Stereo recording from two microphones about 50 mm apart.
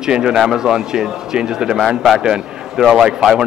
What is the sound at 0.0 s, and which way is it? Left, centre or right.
Speech, centre.